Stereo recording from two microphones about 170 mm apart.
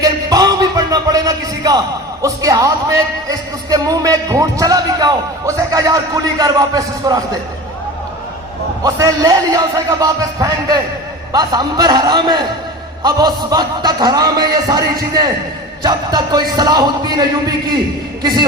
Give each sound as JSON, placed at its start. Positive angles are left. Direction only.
{"t": 0.0, "sound": "music", "side_deg": -20}
{"t": 2.2, "sound": "speech", "side_deg": -20}
{"t": 8.8, "sound": "speech", "side_deg": -20}